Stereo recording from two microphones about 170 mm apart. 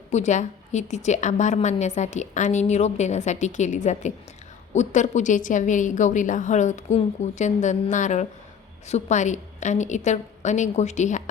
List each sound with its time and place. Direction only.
0.1 s a woman's voice: 45° left (ahead or behind)